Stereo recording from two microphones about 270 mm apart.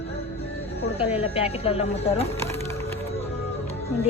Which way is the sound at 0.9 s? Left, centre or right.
Left.